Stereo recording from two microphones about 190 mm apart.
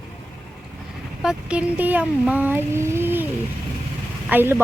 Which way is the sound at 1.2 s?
5° right (ahead or behind).